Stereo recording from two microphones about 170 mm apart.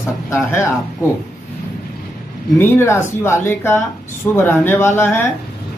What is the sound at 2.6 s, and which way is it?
Speech, 15° left (ahead or behind).